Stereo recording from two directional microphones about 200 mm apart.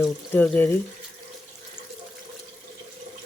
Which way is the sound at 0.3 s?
10° left (ahead or behind).